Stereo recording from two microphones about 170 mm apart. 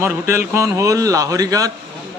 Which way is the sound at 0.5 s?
20° right (ahead or behind).